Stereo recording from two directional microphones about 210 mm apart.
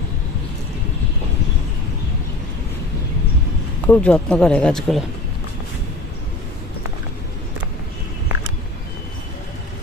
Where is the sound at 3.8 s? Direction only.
5° left (ahead or behind).